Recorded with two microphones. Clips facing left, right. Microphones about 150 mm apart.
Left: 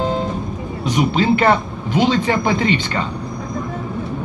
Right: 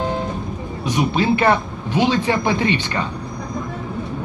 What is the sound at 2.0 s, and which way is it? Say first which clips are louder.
Speech: left 1 dB; 15° right (ahead or behind).